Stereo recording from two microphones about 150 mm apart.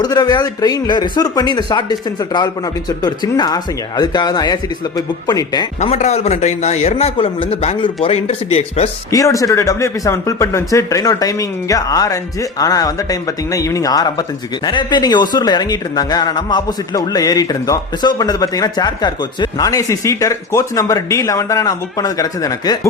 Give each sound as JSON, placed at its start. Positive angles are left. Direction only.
{"t": 0.0, "sound": "speech", "side_deg": 25}
{"t": 5.8, "sound": "a man's voice", "side_deg": 45}
{"t": 9.1, "sound": "speech", "side_deg": 20}